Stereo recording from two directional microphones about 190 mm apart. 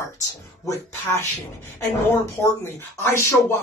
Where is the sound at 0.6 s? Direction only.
15° left (ahead or behind).